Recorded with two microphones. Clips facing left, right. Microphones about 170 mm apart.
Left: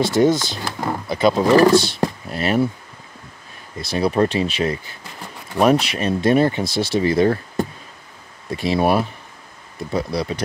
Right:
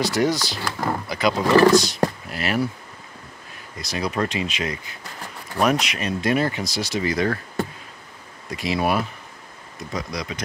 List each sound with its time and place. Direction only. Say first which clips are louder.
0.0 s speech: left 5 dB; 25° left (ahead or behind)
3.7 s speech: left 7 dB; 30° left (ahead or behind)